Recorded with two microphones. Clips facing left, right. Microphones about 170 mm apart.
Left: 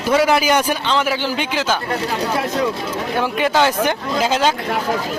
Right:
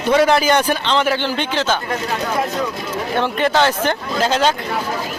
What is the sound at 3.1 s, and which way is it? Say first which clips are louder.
A man's voice: right 1 dB; 5° left (ahead or behind).